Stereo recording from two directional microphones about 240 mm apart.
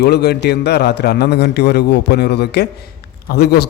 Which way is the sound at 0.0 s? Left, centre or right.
Left.